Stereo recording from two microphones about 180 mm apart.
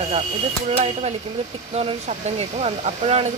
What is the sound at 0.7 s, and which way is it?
Speech, 35° right (ahead or behind).